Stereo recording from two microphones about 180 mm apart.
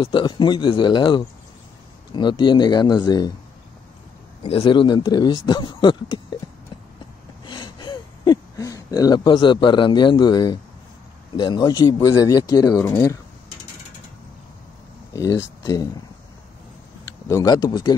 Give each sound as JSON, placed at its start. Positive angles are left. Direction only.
{"t": 0.0, "sound": "speech", "side_deg": 25}
{"t": 4.4, "sound": "speech", "side_deg": 30}
{"t": 7.4, "sound": "a sound", "side_deg": 25}
{"t": 11.3, "sound": "speech", "side_deg": 25}
{"t": 15.1, "sound": "speech", "side_deg": 20}
{"t": 17.3, "sound": "speech", "side_deg": 20}